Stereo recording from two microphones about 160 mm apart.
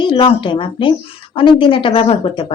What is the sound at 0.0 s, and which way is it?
Speech, 35° left (ahead or behind).